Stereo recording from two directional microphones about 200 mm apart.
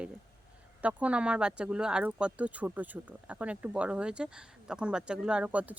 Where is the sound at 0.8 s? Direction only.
5° right (ahead or behind).